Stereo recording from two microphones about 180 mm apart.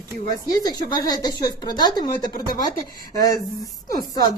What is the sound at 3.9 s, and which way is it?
Speech, 20° left (ahead or behind).